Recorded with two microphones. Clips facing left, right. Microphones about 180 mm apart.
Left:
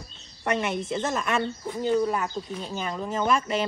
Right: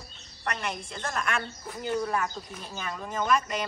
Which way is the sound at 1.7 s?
Centre (ahead or behind).